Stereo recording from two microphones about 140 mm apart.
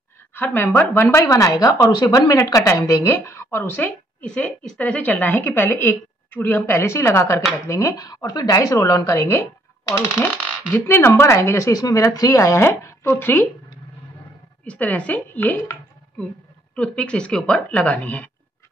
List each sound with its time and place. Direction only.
0.3 s speech: 15° left (ahead or behind)
14.6 s speech: 10° left (ahead or behind)